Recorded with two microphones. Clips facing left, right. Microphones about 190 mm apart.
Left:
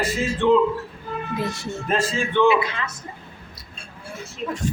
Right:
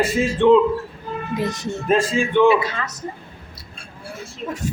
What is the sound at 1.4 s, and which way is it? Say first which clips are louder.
Speech: right 5 dB; 20° right (ahead or behind).